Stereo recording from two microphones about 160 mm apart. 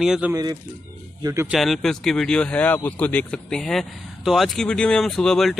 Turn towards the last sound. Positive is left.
turn(degrees=0)  # may be behind; listen again after turning